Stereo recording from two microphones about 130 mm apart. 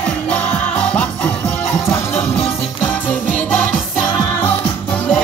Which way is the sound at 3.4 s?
15° left (ahead or behind).